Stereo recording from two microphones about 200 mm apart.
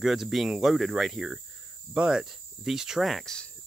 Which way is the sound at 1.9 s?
5° right (ahead or behind).